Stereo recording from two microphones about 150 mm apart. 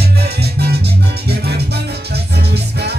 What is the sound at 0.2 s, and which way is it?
Music, 90° right.